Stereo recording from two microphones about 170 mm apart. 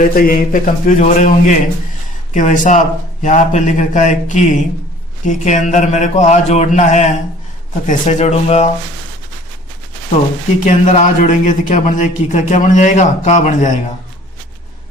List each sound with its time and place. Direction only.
0.0 s a man's voice: 55° left (ahead or behind); by 8.7 s 40° left (ahead or behind)
10.7 s a man's voice: 50° left (ahead or behind)